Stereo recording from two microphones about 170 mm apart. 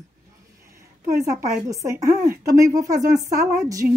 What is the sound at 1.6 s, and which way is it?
A woman's voice, 15° right (ahead or behind).